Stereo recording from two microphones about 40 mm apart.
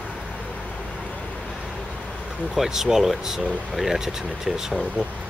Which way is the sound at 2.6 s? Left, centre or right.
Centre.